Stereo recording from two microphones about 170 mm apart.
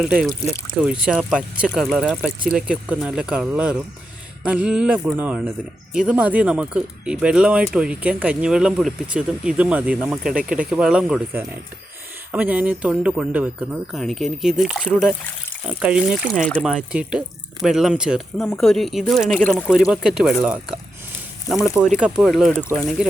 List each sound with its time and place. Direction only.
0.0 s speech: 5° right (ahead or behind)
0.4 s speech: 15° left (ahead or behind)
0.9 s speech: 5° right (ahead or behind)
12.3 s speech: 10° right (ahead or behind)
21.9 s speech: 5° right (ahead or behind)